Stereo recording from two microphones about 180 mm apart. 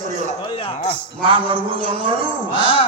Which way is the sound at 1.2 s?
30° right (ahead or behind).